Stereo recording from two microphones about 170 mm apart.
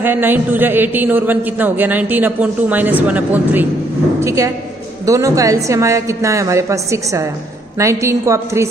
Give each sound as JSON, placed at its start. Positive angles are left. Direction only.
{"t": 0.0, "sound": "a man's voice", "side_deg": -10}